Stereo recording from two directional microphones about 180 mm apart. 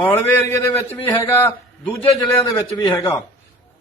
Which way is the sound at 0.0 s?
10° left (ahead or behind).